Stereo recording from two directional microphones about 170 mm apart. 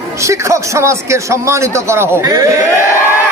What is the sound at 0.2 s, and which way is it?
A man's voice, 15° right (ahead or behind).